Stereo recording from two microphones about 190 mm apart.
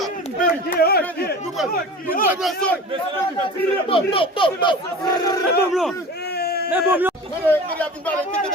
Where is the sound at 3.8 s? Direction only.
30° left (ahead or behind).